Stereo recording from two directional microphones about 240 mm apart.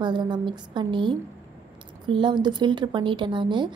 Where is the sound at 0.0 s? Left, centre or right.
Centre.